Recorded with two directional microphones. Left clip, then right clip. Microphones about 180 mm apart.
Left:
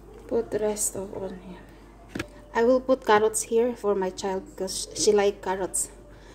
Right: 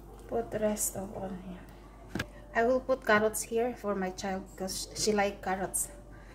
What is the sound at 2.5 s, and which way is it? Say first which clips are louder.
A woman's voice: left 6 dB; 35° left (ahead or behind).